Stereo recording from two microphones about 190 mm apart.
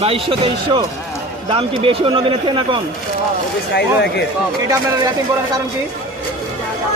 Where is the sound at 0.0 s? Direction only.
30° right (ahead or behind).